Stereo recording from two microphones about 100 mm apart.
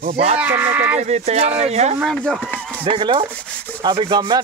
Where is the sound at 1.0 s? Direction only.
90° right.